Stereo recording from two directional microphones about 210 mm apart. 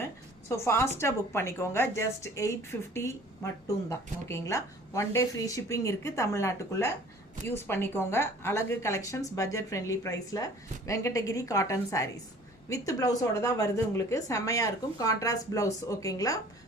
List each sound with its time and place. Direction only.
0.0 s a woman's voice: 15° left (ahead or behind)